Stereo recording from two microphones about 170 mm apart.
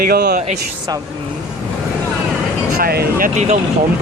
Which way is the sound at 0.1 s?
75° right (ahead or behind).